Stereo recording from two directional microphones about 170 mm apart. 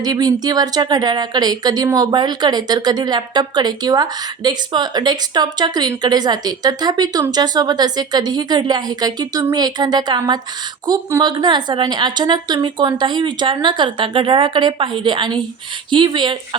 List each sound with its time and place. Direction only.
0.0 s speech: 25° right (ahead or behind)